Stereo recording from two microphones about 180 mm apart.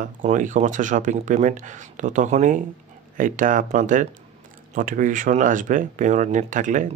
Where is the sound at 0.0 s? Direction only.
45° right (ahead or behind).